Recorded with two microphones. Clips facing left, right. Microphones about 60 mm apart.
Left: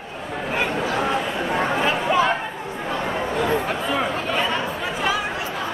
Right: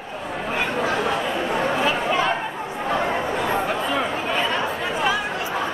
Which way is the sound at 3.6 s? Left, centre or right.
Centre.